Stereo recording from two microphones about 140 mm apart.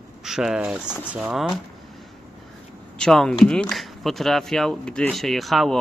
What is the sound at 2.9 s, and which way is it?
Speech, 5° left (ahead or behind).